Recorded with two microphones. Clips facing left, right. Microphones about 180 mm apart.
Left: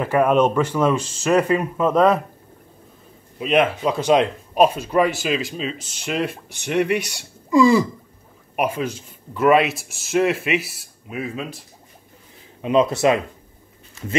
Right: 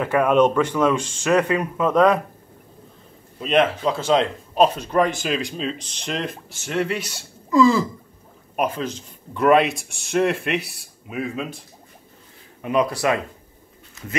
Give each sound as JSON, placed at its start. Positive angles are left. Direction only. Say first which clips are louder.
{"t": 0.0, "sound": "speech", "louder": "even", "side_deg": 5}
{"t": 3.3, "sound": "speech", "louder": "left 1 dB", "side_deg": 5}
{"t": 12.6, "sound": "speech", "louder": "left 4 dB", "side_deg": 25}